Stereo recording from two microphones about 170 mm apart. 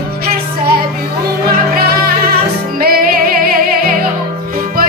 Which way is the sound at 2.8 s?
60° right (ahead or behind).